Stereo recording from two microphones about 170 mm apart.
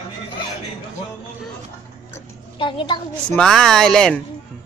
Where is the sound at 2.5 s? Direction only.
30° left (ahead or behind).